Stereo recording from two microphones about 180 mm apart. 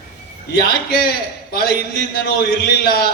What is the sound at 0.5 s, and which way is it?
A man's voice, 60° left (ahead or behind).